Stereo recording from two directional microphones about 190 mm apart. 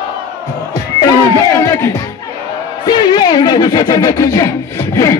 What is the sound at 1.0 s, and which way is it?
Speech, 20° left (ahead or behind).